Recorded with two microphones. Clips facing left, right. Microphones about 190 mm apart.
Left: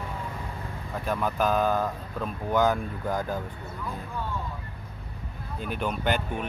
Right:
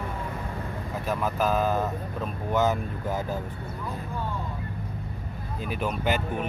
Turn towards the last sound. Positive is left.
turn(degrees=-5)  # may be behind; listen again after turning